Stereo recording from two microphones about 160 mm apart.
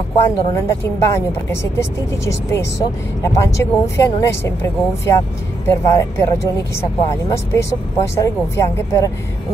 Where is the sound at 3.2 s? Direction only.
20° left (ahead or behind).